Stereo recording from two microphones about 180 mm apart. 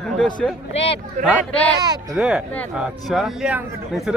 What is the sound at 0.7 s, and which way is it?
Speech, 35° left (ahead or behind).